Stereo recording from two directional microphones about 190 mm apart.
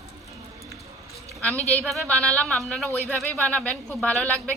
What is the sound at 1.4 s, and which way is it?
Speech, 5° left (ahead or behind).